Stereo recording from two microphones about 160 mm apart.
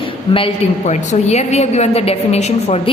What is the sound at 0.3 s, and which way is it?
A woman's voice, 40° left (ahead or behind).